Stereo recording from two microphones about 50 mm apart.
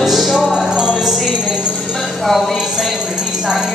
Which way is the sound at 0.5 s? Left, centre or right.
Centre.